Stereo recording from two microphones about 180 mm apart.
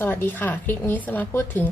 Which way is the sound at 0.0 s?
10° left (ahead or behind).